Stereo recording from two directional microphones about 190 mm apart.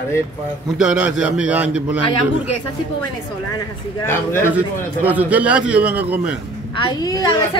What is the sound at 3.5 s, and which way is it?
A man's voice, 15° left (ahead or behind).